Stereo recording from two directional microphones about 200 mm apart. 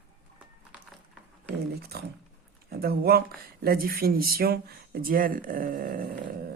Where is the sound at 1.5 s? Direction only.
50° right (ahead or behind).